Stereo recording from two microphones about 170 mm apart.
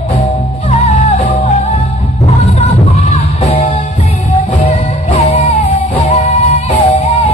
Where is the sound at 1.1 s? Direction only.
40° left (ahead or behind).